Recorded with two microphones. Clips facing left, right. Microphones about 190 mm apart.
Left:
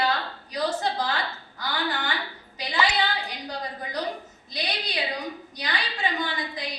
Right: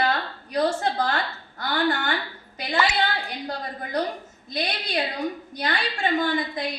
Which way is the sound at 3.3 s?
50° right (ahead or behind).